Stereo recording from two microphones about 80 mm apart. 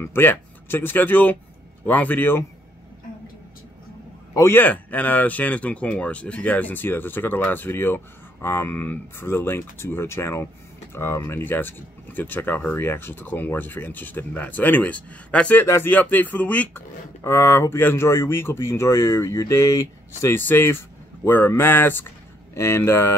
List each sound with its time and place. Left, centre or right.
0.0 s speech: left
4.5 s speech: left
15.6 s speech: left
15.9 s speech: left
17.2 s speech: left
20.3 s speech: left